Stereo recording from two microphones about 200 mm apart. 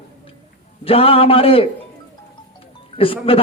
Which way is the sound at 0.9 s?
30° left (ahead or behind).